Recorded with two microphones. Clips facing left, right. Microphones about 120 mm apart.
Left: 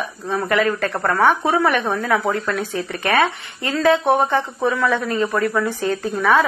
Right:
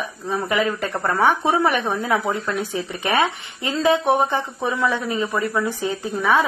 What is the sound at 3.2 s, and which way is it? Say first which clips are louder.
A woman's voice: left 2 dB; 15° right (ahead or behind).